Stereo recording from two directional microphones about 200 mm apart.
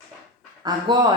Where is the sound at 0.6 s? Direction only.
20° right (ahead or behind).